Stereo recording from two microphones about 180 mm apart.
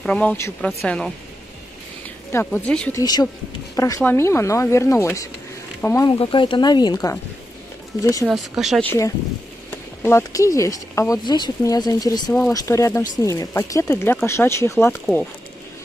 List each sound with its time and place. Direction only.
0.0 s speech: 5° left (ahead or behind)
2.9 s speech: 20° left (ahead or behind)
6.0 s speech: 30° left (ahead or behind)
8.3 s speech: centre (ahead or behind)
8.8 s speech: 15° left (ahead or behind)